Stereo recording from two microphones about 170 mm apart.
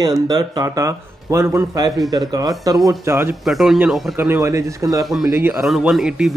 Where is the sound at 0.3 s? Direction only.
20° right (ahead or behind).